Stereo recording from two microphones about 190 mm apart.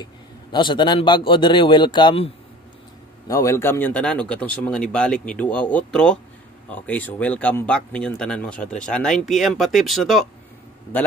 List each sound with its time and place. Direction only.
0.0 s a man's voice: 25° left (ahead or behind)
3.3 s a man's voice: 15° left (ahead or behind); by 10.2 s centre (ahead or behind)